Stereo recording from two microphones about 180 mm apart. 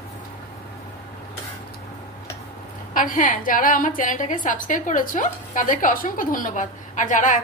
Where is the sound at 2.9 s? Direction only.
45° left (ahead or behind).